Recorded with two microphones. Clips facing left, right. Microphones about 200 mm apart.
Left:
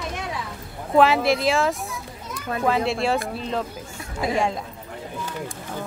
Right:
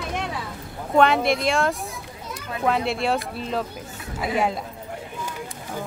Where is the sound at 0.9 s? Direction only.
Centre (ahead or behind).